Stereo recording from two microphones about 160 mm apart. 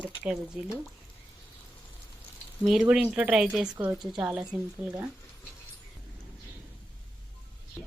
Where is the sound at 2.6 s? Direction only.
5° right (ahead or behind).